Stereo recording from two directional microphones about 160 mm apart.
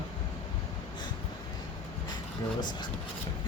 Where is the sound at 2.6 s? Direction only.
25° left (ahead or behind).